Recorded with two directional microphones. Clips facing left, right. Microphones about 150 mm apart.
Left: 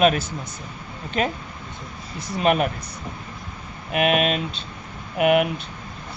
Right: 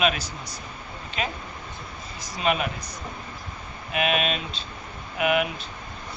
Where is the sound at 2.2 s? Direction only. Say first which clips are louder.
Left 5 dB; 55° left (ahead or behind).